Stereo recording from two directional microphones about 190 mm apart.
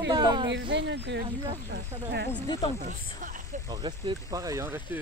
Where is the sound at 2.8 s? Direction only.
40° right (ahead or behind).